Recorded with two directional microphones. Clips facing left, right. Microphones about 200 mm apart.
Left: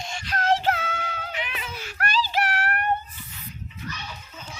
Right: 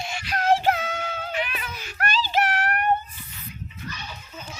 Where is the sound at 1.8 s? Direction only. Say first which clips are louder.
Even; 20° right (ahead or behind).